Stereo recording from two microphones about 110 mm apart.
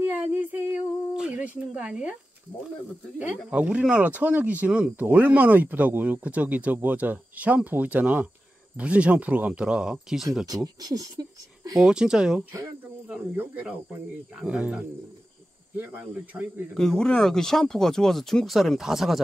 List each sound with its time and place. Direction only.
0.0 s a sound: 15° right (ahead or behind)
1.7 s speech: 10° right (ahead or behind)
3.2 s speech: 15° right (ahead or behind)
10.4 s speech: 35° right (ahead or behind)
11.8 s speech: 5° right (ahead or behind)
16.7 s speech: 5° left (ahead or behind)